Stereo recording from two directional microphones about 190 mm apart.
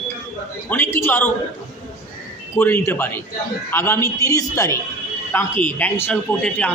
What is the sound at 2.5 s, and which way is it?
A man's voice, 15° left (ahead or behind).